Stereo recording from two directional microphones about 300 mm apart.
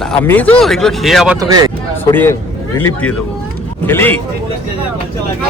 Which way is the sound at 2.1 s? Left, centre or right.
Centre.